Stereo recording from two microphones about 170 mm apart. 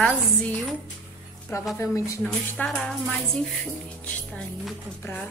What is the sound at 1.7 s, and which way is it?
Speech, 20° left (ahead or behind).